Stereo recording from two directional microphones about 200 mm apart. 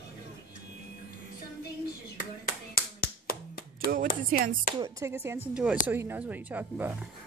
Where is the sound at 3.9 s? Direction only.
45° right (ahead or behind).